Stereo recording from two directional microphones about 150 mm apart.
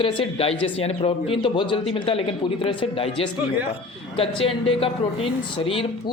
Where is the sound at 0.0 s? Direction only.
35° left (ahead or behind).